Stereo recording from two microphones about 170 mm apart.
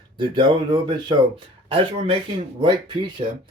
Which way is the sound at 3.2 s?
45° right (ahead or behind).